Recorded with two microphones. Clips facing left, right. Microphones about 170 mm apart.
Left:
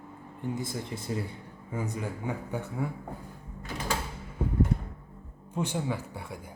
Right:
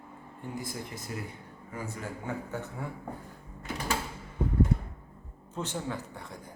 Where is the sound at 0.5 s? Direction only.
30° left (ahead or behind).